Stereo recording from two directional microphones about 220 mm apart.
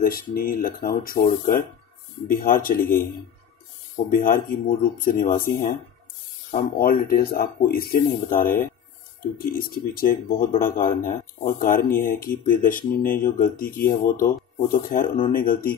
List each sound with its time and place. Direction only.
0.0 s speech: 40° left (ahead or behind)
3.9 s speech: 40° left (ahead or behind)